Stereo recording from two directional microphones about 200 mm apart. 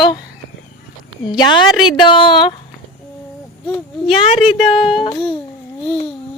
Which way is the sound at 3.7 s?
5° left (ahead or behind).